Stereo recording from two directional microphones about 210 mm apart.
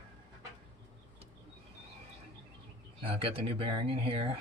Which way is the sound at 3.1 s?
25° right (ahead or behind).